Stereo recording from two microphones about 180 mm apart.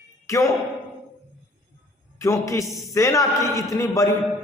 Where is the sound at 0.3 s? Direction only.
15° left (ahead or behind).